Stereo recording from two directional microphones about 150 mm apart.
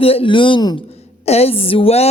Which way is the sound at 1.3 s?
40° left (ahead or behind).